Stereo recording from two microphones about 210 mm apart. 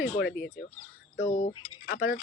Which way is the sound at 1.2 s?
35° left (ahead or behind).